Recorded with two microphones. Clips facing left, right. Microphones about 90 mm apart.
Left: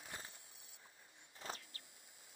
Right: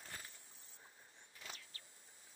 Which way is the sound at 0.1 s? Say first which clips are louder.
Left 2 dB; 20° left (ahead or behind).